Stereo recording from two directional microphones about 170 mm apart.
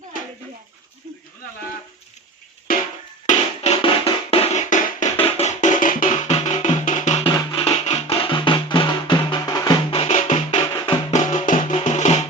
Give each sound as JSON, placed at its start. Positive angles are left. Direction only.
{"t": 2.7, "sound": "music", "side_deg": 60}
{"t": 3.2, "sound": "music", "side_deg": 40}
{"t": 7.3, "sound": "music", "side_deg": 35}
{"t": 10.5, "sound": "music", "side_deg": 25}
{"t": 11.1, "sound": "music", "side_deg": 45}